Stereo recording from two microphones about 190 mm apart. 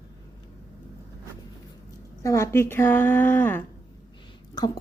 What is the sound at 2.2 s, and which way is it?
A woman's voice, 15° left (ahead or behind).